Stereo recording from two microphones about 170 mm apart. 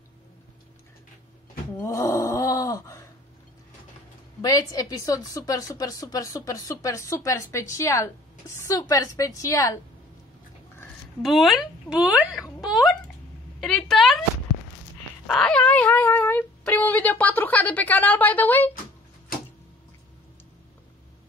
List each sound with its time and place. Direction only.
1.8 s groan: 20° left (ahead or behind)
4.4 s a woman's voice: 20° left (ahead or behind)
11.2 s speech: centre (ahead or behind)
13.6 s a sound: 5° left (ahead or behind)
15.2 s speech: 5° left (ahead or behind)